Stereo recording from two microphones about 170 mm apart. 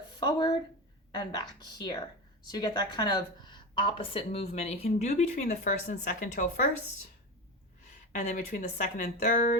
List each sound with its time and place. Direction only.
0.2 s a woman's voice: 25° left (ahead or behind); by 6.5 s 50° left (ahead or behind)
8.2 s a woman's voice: 45° left (ahead or behind)